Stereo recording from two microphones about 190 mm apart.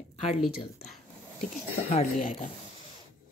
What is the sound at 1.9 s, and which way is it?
Speech, 45° left (ahead or behind).